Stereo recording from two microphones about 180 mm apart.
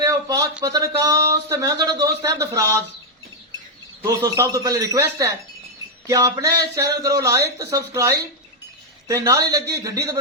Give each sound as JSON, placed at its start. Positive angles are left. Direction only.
{"t": 0.0, "sound": "a sound", "side_deg": -20}
{"t": 0.6, "sound": "speech", "side_deg": -20}
{"t": 4.0, "sound": "speech", "side_deg": -15}